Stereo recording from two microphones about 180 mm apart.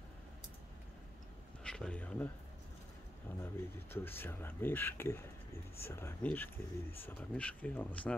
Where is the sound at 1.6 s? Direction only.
5° left (ahead or behind).